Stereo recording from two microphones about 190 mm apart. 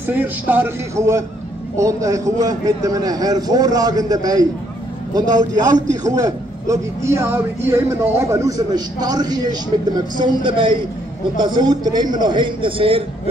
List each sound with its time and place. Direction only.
0.0 s a man's voice: 10° right (ahead or behind); by 13.0 s 30° right (ahead or behind)